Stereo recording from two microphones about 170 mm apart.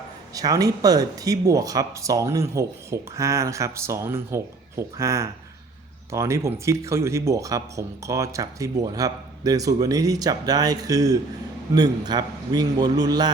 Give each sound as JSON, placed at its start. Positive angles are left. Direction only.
{"t": 0.3, "sound": "speech", "side_deg": -20}